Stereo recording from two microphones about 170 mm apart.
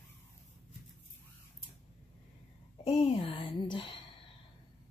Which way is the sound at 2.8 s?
35° left (ahead or behind).